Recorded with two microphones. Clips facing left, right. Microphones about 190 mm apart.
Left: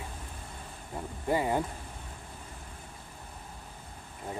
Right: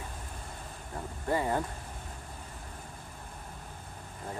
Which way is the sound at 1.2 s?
15° left (ahead or behind).